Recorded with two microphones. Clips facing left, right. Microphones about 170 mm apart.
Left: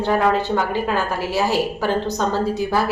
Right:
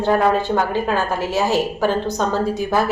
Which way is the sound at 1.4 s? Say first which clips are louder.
Right 2 dB; 15° right (ahead or behind).